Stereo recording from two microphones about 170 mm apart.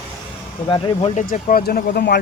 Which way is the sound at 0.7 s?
30° left (ahead or behind).